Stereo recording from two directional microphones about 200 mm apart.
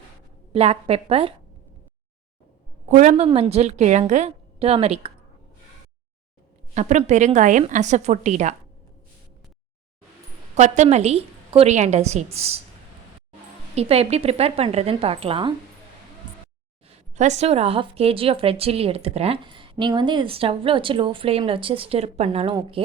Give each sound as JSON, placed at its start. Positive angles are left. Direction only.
{"t": 0.5, "sound": "a woman's voice", "side_deg": -30}
{"t": 2.9, "sound": "a woman's voice", "side_deg": -35}
{"t": 6.7, "sound": "a woman's voice", "side_deg": -35}
{"t": 10.5, "sound": "a woman's voice", "side_deg": -35}
{"t": 13.7, "sound": "a woman's voice", "side_deg": -30}
{"t": 17.2, "sound": "a woman's voice", "side_deg": -35}